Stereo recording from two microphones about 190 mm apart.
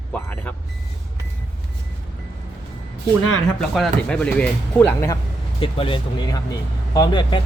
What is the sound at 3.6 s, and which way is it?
Speech, centre (ahead or behind).